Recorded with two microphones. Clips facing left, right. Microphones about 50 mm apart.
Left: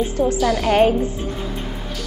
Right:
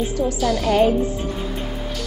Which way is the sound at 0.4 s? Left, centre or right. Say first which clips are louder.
Left 2 dB; centre.